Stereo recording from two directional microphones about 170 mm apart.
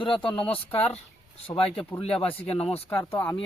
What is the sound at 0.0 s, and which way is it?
Speech, 30° left (ahead or behind).